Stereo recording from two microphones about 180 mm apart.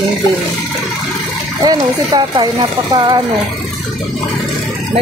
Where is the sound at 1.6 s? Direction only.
20° right (ahead or behind).